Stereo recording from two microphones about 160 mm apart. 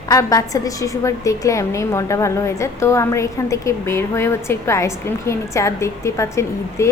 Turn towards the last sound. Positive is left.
turn(degrees=20)  # may be behind; listen again after turning